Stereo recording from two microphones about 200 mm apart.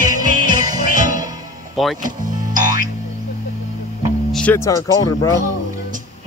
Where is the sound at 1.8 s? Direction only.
Centre (ahead or behind).